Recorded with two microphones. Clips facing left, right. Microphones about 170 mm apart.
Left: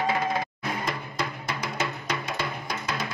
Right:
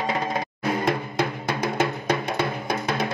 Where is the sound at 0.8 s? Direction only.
60° right (ahead or behind).